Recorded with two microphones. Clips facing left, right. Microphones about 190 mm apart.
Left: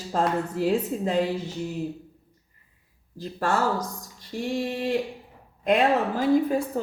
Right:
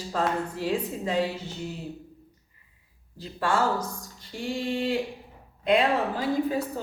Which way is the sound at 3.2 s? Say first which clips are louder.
Left 2 dB; 45° left (ahead or behind).